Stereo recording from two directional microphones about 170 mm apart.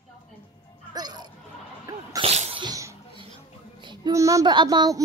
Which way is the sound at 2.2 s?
40° right (ahead or behind).